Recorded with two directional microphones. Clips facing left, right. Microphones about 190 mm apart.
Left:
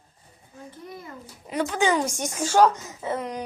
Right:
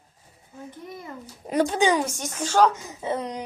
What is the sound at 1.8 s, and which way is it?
Speech, 15° right (ahead or behind).